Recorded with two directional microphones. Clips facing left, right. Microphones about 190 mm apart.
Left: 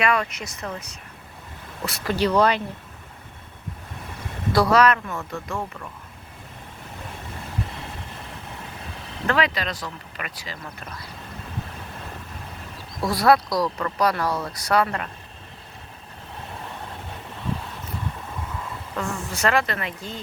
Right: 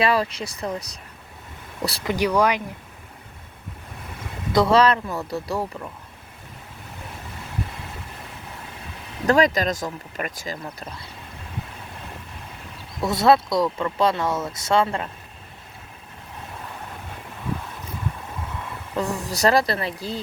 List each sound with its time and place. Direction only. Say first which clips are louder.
0.0 s speech: right 2 dB; 30° right (ahead or behind)
1.8 s speech: right 4 dB; 35° right (ahead or behind)
2.0 s speech: left 1 dB; 15° right (ahead or behind)
4.5 s speech: right 1 dB; 25° right (ahead or behind)
9.2 s speech: right 5 dB; 45° right (ahead or behind)
13.1 s speech: right 1 dB; 25° right (ahead or behind)
18.9 s speech: right 4 dB; 35° right (ahead or behind)